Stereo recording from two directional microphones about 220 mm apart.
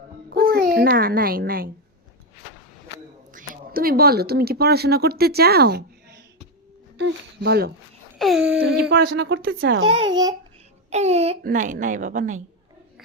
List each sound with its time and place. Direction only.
0.3 s a child's voice: 45° right (ahead or behind)
3.3 s speech: 40° right (ahead or behind)
8.2 s a sound: centre (ahead or behind)
8.8 s speech: 45° right (ahead or behind)
10.9 s a child's voice: 30° right (ahead or behind)